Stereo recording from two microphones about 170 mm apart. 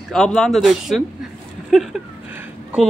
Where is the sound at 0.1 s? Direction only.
Centre (ahead or behind).